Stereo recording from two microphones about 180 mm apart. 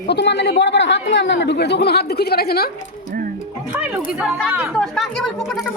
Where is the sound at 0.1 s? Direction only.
70° left (ahead or behind).